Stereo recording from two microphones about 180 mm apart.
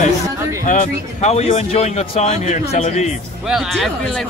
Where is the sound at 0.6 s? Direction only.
40° left (ahead or behind).